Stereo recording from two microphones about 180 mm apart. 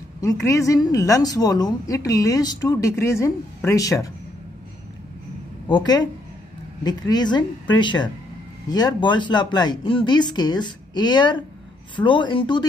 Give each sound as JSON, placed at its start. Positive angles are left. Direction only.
{"t": 0.2, "sound": "a woman's voice", "side_deg": 15}
{"t": 5.7, "sound": "a woman's voice", "side_deg": 20}